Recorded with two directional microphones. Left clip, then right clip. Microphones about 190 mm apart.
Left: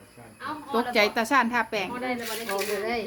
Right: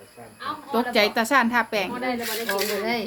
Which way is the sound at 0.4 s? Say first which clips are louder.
Right 2 dB; 5° right (ahead or behind).